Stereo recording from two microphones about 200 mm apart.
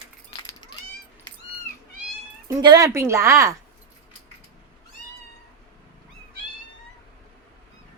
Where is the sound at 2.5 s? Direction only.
20° right (ahead or behind).